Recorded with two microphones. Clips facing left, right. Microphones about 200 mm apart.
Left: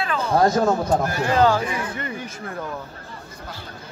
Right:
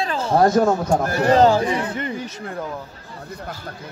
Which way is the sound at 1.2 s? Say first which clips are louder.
Right 6 dB; 35° right (ahead or behind).